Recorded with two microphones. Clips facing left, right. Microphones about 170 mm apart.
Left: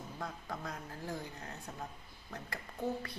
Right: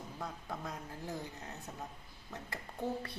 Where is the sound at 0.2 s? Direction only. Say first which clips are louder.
Even; 20° right (ahead or behind).